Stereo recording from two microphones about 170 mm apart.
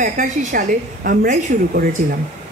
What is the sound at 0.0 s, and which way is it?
A woman's voice, 50° right (ahead or behind).